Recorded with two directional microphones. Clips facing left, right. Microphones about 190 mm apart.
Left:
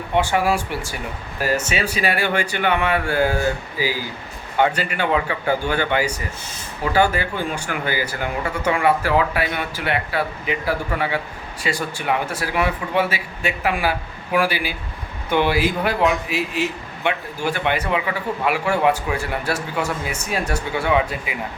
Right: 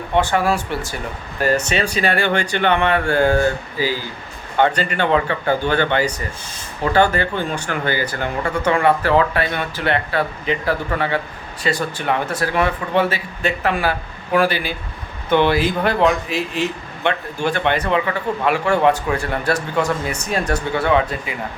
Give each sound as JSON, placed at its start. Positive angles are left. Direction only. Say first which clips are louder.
{"t": 0.2, "sound": "a man's voice", "louder": "right 1 dB", "side_deg": 10}